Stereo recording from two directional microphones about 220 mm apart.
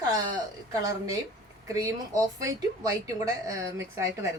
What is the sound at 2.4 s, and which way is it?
A woman's voice, 15° right (ahead or behind).